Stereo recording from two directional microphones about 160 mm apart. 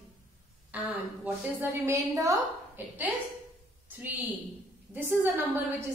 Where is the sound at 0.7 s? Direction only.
10° right (ahead or behind).